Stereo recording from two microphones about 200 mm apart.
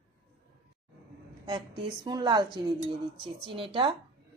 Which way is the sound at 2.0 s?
20° right (ahead or behind).